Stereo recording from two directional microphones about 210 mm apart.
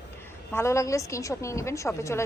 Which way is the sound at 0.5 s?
15° left (ahead or behind).